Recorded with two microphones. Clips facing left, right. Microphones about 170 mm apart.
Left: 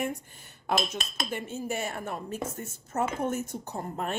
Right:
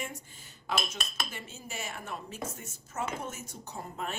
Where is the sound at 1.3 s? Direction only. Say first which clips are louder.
Left 11 dB; 55° left (ahead or behind).